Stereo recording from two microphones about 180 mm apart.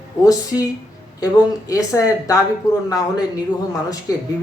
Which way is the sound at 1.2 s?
20° left (ahead or behind).